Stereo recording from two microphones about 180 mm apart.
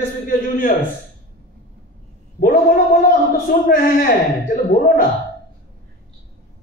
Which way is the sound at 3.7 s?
50° left (ahead or behind).